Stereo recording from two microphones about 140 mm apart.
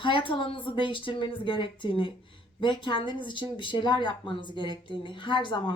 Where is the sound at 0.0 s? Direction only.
35° left (ahead or behind).